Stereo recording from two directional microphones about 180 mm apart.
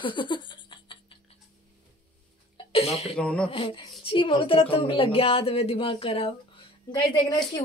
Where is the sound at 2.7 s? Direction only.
35° left (ahead or behind).